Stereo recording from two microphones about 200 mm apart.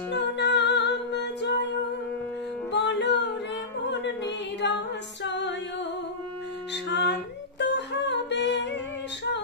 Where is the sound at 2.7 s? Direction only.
60° left (ahead or behind).